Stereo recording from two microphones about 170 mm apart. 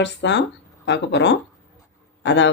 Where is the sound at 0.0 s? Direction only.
90° left.